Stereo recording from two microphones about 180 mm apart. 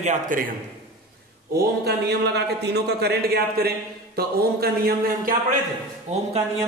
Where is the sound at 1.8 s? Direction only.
65° right (ahead or behind).